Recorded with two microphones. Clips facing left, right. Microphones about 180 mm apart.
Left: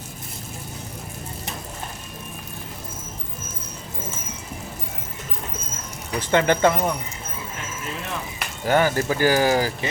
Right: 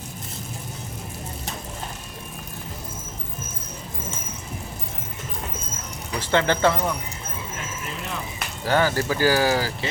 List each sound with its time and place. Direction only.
6.3 s speech: 15° left (ahead or behind)
8.6 s speech: 20° left (ahead or behind)